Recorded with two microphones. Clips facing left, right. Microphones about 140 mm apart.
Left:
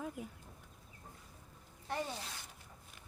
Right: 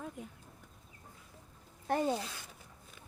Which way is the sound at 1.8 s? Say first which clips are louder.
Right 9 dB; 50° right (ahead or behind).